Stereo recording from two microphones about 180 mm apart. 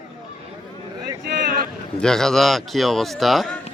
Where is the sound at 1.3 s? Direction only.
50° right (ahead or behind).